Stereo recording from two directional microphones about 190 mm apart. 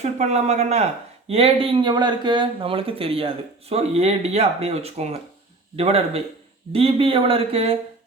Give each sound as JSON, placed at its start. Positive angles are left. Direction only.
{"t": 0.0, "sound": "speech", "side_deg": -35}